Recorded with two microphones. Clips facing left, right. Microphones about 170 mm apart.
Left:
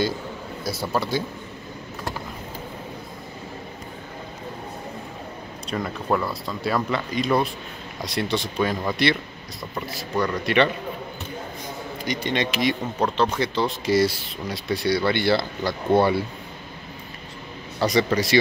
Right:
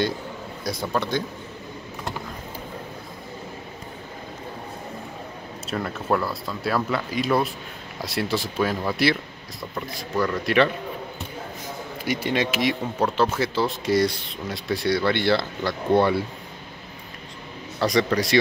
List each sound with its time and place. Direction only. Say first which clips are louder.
0.7 s speech: even; 5° left (ahead or behind)
5.7 s speech: even; centre (ahead or behind)
12.0 s speech: right 1 dB; 5° right (ahead or behind)
17.7 s speech: even; centre (ahead or behind)